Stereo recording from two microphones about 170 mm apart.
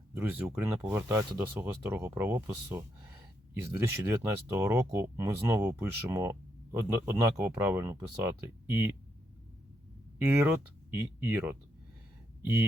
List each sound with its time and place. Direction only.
0.1 s speech: 10° right (ahead or behind)
10.2 s speech: 10° right (ahead or behind)